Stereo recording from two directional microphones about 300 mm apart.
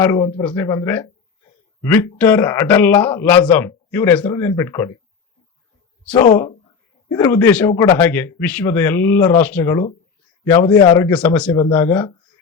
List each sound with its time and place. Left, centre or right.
0.0 s a man's voice: centre
6.3 s a man's voice: centre